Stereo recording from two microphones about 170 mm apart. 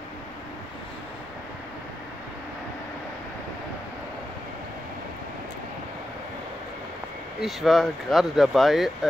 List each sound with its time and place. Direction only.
7.3 s speech: centre (ahead or behind)